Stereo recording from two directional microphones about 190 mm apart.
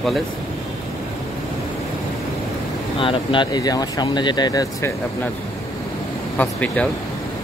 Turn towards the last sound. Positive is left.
turn(degrees=5)  # may be behind; listen again after turning